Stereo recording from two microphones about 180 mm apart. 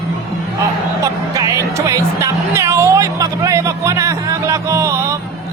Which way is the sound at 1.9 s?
15° right (ahead or behind).